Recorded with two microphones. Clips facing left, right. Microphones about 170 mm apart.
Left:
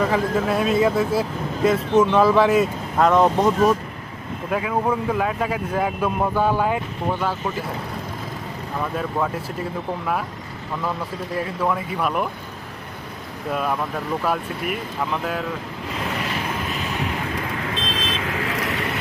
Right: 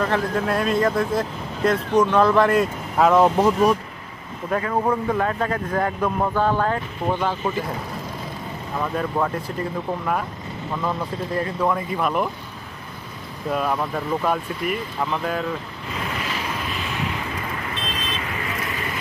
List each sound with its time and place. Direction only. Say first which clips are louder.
0.0 s speech: left 2 dB; 5° left (ahead or behind)
8.9 s speech: right 1 dB; centre (ahead or behind)
11.3 s speech: right 1 dB; 5° left (ahead or behind)
13.5 s speech: right 1 dB; centre (ahead or behind)
17.7 s vehicle: left 3 dB; 90° left